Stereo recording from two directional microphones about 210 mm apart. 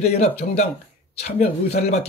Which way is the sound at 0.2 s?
30° left (ahead or behind).